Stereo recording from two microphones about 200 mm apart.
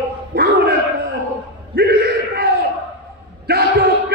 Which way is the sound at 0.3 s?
50° right (ahead or behind).